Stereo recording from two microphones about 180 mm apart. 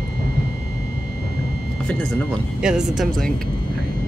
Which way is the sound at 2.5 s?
5° right (ahead or behind).